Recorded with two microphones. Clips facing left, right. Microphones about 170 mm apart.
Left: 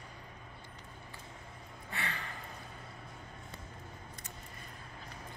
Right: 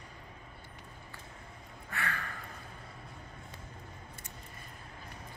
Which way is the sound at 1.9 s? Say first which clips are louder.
Right 3 dB; 20° left (ahead or behind).